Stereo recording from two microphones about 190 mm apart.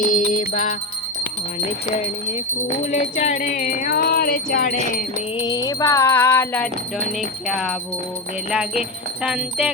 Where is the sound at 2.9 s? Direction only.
35° left (ahead or behind).